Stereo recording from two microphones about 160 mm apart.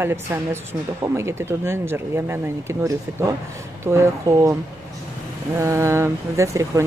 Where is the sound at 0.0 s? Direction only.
15° right (ahead or behind).